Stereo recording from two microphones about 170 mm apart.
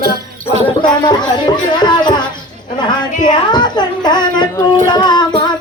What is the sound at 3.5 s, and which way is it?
Child singing, 25° left (ahead or behind).